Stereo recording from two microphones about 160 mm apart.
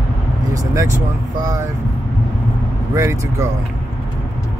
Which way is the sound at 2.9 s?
15° right (ahead or behind).